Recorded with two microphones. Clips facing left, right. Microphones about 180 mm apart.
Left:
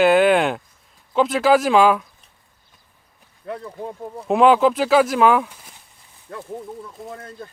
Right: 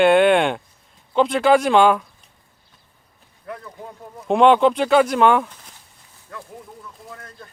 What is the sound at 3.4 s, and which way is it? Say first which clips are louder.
Speech: left 5 dB; 30° left (ahead or behind).